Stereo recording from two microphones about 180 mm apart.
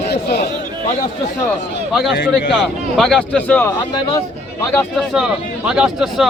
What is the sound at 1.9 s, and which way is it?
Speech, centre (ahead or behind).